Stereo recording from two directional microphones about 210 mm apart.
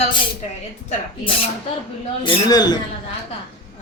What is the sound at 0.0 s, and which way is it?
A man's voice, 25° left (ahead or behind).